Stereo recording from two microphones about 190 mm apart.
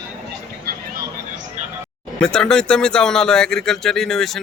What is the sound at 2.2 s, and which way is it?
Speech, 5° left (ahead or behind).